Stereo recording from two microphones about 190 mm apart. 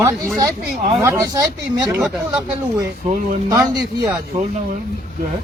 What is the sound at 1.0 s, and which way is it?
Speech, 15° right (ahead or behind).